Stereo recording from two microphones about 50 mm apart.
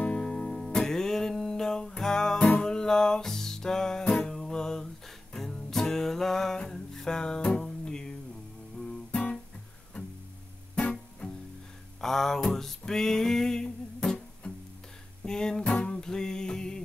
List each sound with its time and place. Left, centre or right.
0.0 s music: centre
10.8 s music: centre
12.0 s a sound: centre
15.2 s music: centre